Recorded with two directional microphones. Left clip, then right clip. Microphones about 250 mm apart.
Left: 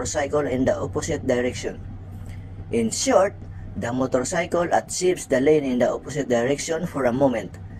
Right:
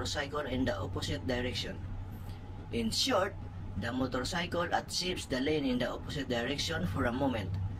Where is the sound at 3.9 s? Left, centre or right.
Left.